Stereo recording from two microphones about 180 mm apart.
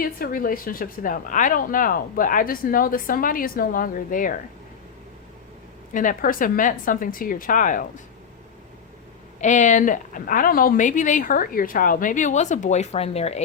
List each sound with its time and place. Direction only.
0.0 s speech: 55° left (ahead or behind)
5.9 s speech: 45° left (ahead or behind)
9.4 s speech: 45° left (ahead or behind)